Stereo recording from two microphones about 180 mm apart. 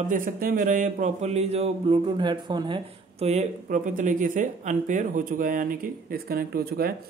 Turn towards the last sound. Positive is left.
turn(degrees=-60)  # may be behind; listen again after turning